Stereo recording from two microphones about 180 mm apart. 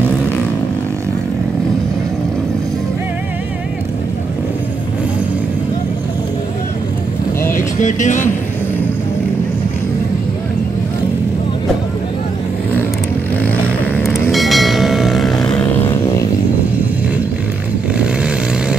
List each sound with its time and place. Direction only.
7.5 s vehicle: 45° left (ahead or behind)
14.3 s vehicle: centre (ahead or behind); by 16.3 s 15° left (ahead or behind)
17.9 s vehicle: 5° right (ahead or behind)